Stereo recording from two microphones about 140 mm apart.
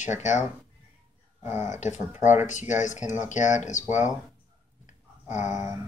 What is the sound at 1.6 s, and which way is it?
Speech, 60° left (ahead or behind).